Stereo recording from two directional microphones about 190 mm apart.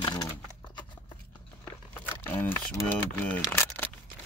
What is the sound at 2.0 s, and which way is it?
Speech, 10° left (ahead or behind).